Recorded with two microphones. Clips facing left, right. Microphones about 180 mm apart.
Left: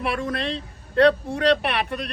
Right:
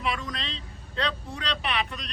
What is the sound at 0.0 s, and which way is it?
Speech, 65° left (ahead or behind).